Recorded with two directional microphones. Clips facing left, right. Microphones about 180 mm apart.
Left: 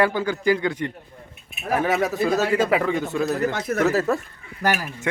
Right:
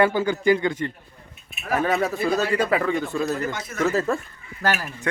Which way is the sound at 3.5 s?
60° left (ahead or behind).